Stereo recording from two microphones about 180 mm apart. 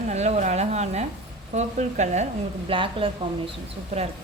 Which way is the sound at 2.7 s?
30° right (ahead or behind).